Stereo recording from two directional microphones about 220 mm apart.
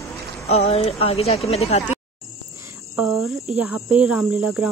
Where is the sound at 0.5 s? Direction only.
30° left (ahead or behind).